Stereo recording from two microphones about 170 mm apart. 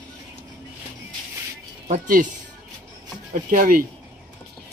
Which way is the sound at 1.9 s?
55° right (ahead or behind).